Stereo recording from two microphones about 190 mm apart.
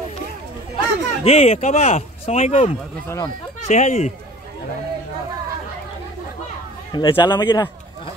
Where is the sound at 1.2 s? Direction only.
35° left (ahead or behind).